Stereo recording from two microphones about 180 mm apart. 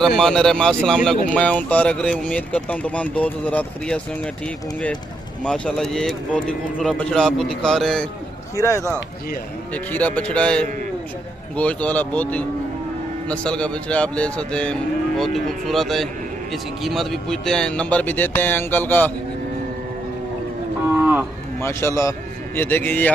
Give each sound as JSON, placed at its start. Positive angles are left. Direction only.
{"t": 0.0, "sound": "a man's voice", "side_deg": 5}
{"t": 5.4, "sound": "a man's voice", "side_deg": 5}
{"t": 8.5, "sound": "speech", "side_deg": 15}
{"t": 9.8, "sound": "a man's voice", "side_deg": 10}
{"t": 20.9, "sound": "cattle", "side_deg": -10}
{"t": 21.5, "sound": "speech", "side_deg": 15}